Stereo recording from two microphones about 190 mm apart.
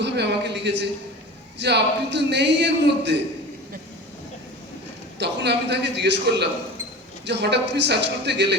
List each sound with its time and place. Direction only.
0.0 s a man's voice: 65° right (ahead or behind)
5.2 s a man's voice: 65° right (ahead or behind)